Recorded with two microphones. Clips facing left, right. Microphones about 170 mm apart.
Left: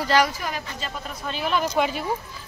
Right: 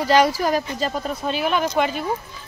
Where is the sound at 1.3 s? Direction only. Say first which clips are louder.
Right 2 dB; 5° right (ahead or behind).